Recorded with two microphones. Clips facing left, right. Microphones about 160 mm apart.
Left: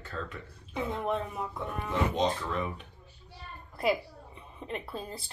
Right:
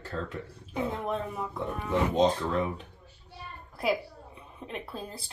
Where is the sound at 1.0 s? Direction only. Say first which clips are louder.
Even; centre (ahead or behind).